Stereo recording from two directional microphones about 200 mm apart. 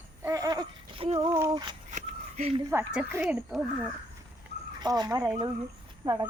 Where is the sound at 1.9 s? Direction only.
35° right (ahead or behind).